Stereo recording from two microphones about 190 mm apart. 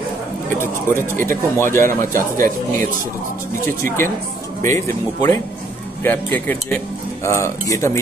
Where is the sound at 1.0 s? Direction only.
10° left (ahead or behind).